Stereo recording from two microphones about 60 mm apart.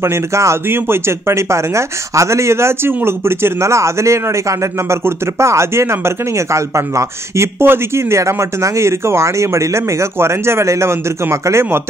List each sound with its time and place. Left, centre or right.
0.0 s speech: right
0.7 s speech: right
7.6 s speech: right